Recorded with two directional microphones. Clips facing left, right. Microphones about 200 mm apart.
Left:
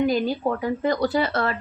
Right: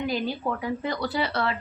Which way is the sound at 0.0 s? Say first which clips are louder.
Left 6 dB; 45° left (ahead or behind).